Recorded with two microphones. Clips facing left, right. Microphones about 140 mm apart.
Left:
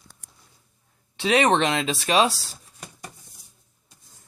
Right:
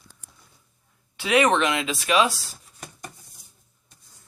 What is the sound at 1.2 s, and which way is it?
Speech, 30° left (ahead or behind).